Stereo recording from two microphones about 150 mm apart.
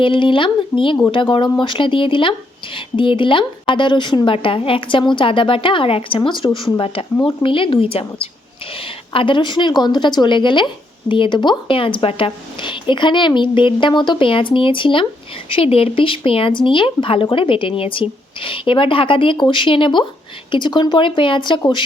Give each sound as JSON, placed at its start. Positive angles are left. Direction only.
{"t": 0.0, "sound": "speech", "side_deg": 35}